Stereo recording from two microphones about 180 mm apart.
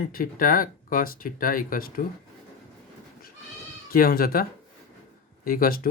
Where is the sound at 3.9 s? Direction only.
55° left (ahead or behind).